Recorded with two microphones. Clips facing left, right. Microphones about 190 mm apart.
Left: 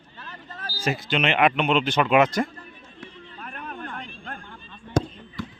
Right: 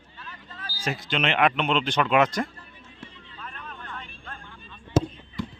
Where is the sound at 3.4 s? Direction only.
55° left (ahead or behind).